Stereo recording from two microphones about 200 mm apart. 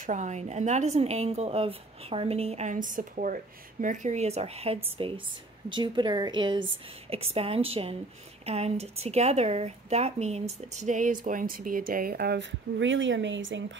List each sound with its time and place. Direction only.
0.0 s a woman's voice: 40° right (ahead or behind); by 13.7 s 70° right (ahead or behind)